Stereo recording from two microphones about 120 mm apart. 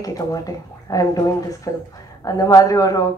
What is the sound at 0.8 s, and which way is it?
A woman's voice, 30° left (ahead or behind).